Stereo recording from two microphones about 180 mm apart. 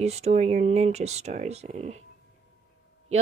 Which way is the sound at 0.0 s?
35° right (ahead or behind).